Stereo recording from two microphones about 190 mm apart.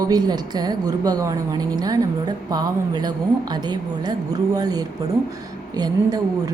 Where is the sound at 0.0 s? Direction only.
20° right (ahead or behind).